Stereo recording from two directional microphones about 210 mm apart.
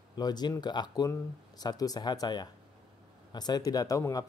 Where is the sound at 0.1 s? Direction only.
20° left (ahead or behind).